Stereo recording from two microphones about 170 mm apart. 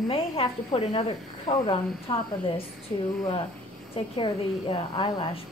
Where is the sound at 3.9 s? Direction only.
30° left (ahead or behind).